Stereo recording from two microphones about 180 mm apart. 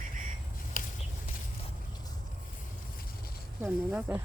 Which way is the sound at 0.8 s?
50° left (ahead or behind).